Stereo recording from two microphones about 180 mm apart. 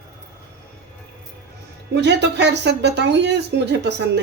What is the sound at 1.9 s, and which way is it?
Speech, 70° right (ahead or behind).